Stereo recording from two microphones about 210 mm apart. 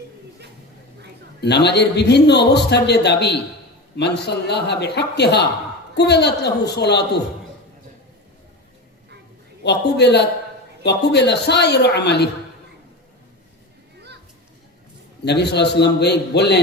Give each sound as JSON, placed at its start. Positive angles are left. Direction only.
{"t": 1.4, "sound": "a man's voice", "side_deg": 50}
{"t": 9.6, "sound": "a man's voice", "side_deg": 55}
{"t": 15.2, "sound": "a man's voice", "side_deg": 55}